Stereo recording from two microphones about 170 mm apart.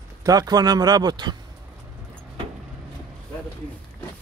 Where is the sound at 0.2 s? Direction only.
20° right (ahead or behind).